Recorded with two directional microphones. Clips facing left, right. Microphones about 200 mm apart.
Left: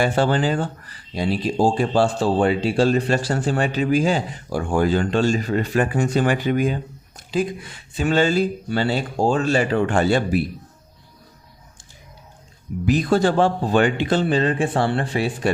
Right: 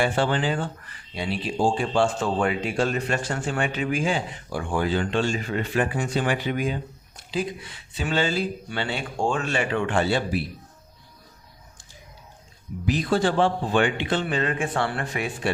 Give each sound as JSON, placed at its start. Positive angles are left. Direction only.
{"t": 0.0, "sound": "speech", "side_deg": 40}
{"t": 12.8, "sound": "speech", "side_deg": 45}